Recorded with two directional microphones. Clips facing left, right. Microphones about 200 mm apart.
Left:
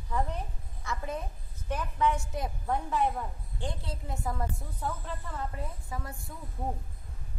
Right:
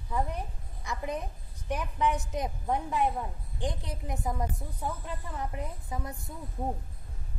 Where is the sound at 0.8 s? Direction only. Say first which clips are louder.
Right 1 dB; 15° right (ahead or behind).